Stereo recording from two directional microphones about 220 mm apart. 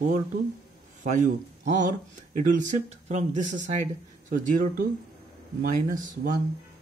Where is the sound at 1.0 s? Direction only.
35° right (ahead or behind).